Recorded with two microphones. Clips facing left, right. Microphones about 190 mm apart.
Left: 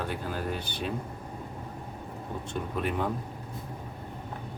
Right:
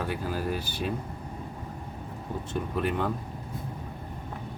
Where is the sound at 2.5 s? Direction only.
Centre (ahead or behind).